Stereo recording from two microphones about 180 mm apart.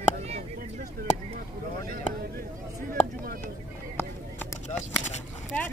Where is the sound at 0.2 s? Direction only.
40° right (ahead or behind).